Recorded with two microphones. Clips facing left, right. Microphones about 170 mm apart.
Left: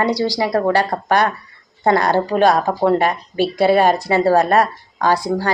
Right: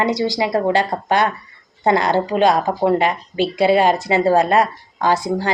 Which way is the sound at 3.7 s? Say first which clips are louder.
Left 1 dB; 45° left (ahead or behind).